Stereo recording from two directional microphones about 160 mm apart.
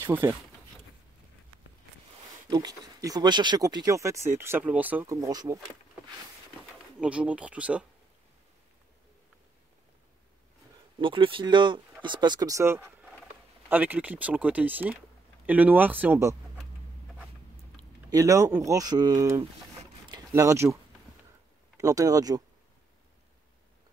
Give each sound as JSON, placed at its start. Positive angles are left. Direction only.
{"t": 0.0, "sound": "speech", "side_deg": -15}
{"t": 2.5, "sound": "speech", "side_deg": -25}
{"t": 7.0, "sound": "speech", "side_deg": -5}
{"t": 11.0, "sound": "speech", "side_deg": -35}
{"t": 18.1, "sound": "speech", "side_deg": -20}
{"t": 20.1, "sound": "a sound", "side_deg": -20}
{"t": 21.7, "sound": "speech", "side_deg": -20}